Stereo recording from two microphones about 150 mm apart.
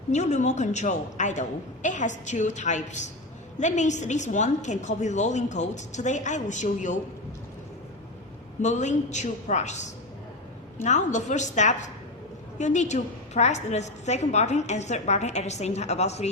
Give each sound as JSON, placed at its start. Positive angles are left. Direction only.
{"t": 0.1, "sound": "a woman's voice", "side_deg": 50}
{"t": 8.6, "sound": "a woman's voice", "side_deg": 50}